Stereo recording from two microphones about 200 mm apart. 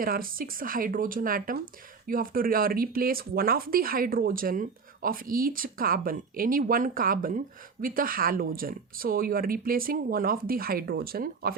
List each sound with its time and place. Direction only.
0.0 s speech: 45° right (ahead or behind)